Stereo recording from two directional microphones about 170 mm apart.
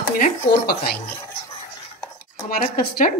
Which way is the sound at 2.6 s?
55° left (ahead or behind).